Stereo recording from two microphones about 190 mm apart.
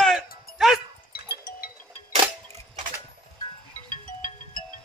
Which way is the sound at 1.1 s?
50° left (ahead or behind).